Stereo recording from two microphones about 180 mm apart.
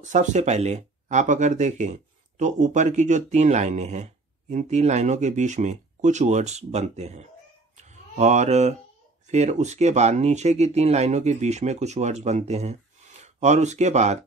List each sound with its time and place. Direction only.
0.0 s speech: 40° right (ahead or behind)
7.7 s a sound: 40° right (ahead or behind)
9.3 s speech: 40° right (ahead or behind)